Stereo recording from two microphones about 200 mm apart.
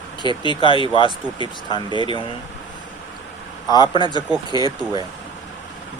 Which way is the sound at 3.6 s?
20° left (ahead or behind).